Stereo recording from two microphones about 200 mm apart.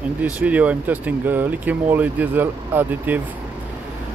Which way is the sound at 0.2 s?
5° right (ahead or behind).